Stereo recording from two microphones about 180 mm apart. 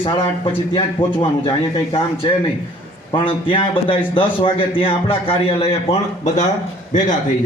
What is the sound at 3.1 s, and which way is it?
A man's voice, 30° left (ahead or behind).